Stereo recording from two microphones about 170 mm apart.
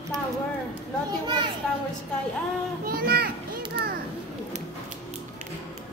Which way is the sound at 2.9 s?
65° right (ahead or behind).